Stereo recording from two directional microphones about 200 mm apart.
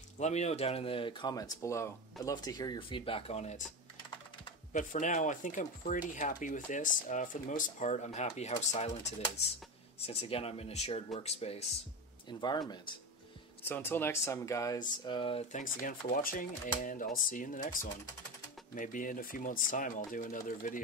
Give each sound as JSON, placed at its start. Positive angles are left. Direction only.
{"t": 0.2, "sound": "speech", "side_deg": 35}
{"t": 4.7, "sound": "speech", "side_deg": 40}
{"t": 13.7, "sound": "speech", "side_deg": 10}
{"t": 15.5, "sound": "speech", "side_deg": 45}